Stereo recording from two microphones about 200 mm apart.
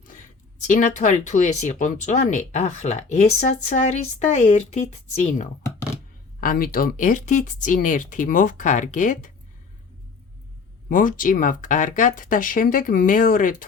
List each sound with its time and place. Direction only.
0.7 s speech: 35° left (ahead or behind)
6.4 s speech: 45° left (ahead or behind)
10.8 s speech: 45° left (ahead or behind)